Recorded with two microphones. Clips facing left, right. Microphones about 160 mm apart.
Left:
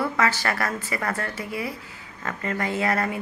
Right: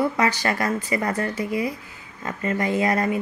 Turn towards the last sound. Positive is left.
turn(degrees=-15)  # may be behind; listen again after turning